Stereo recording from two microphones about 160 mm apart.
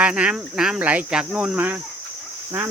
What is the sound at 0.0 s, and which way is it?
Speech, 5° right (ahead or behind).